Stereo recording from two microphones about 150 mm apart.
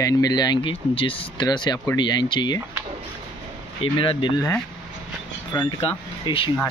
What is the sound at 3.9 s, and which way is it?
Speech, 35° left (ahead or behind).